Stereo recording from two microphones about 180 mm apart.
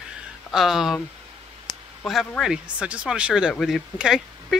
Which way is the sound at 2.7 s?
5° right (ahead or behind).